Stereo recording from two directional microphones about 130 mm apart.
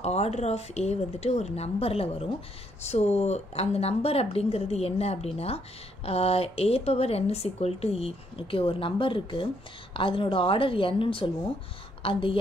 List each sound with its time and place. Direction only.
0.0 s a woman's voice: 55° left (ahead or behind)